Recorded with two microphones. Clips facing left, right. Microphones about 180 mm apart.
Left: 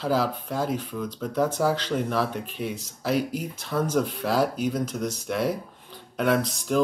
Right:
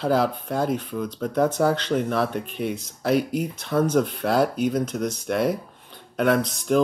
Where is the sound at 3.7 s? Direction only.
Centre (ahead or behind).